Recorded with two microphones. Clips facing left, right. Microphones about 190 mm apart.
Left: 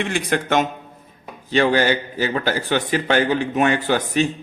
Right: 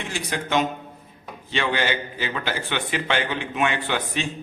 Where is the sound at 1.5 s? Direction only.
40° left (ahead or behind).